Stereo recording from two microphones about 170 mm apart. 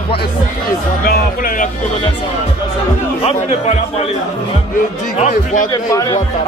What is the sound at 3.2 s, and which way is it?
Speech, 35° left (ahead or behind).